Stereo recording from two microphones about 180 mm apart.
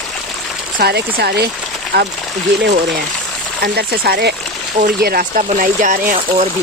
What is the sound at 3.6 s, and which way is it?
Speech, 60° right (ahead or behind).